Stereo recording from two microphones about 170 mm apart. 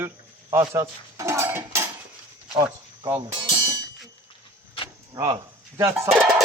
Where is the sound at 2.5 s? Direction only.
25° right (ahead or behind).